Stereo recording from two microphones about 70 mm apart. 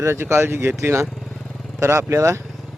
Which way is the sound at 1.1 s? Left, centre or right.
Centre.